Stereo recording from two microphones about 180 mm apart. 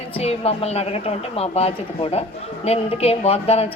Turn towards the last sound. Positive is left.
turn(degrees=35)  # may be behind; listen again after turning